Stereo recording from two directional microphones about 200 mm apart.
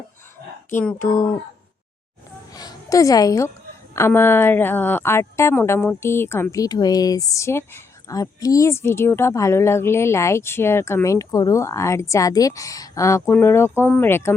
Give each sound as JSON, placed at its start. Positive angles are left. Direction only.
{"t": 0.7, "sound": "a woman's voice", "side_deg": 10}
{"t": 2.5, "sound": "music", "side_deg": 20}
{"t": 3.9, "sound": "a woman's voice", "side_deg": 10}